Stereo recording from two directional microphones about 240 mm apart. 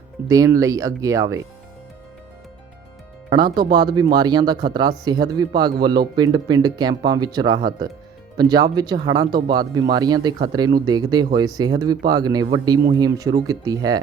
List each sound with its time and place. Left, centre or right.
0.3 s speech: centre
3.6 s speech: centre